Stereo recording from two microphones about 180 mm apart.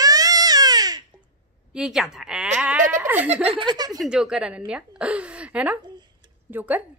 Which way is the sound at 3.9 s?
5° right (ahead or behind).